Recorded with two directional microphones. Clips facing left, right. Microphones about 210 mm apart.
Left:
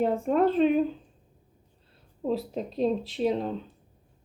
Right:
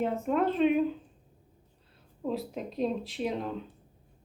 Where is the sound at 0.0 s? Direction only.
35° left (ahead or behind).